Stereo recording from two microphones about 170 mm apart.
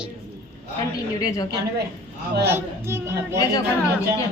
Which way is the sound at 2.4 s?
15° right (ahead or behind).